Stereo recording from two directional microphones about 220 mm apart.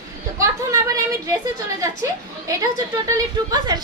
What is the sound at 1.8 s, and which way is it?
A woman's voice, 15° right (ahead or behind).